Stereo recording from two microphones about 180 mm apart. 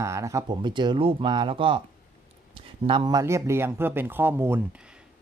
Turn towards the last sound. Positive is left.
turn(degrees=-10)  # may be behind; listen again after turning